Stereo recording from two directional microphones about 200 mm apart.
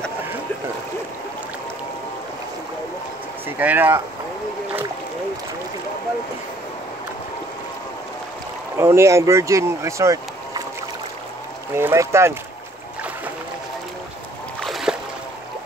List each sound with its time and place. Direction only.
3.4 s speech: 10° right (ahead or behind)
8.7 s speech: 15° right (ahead or behind)
11.7 s speech: 15° right (ahead or behind)
14.6 s boat: centre (ahead or behind)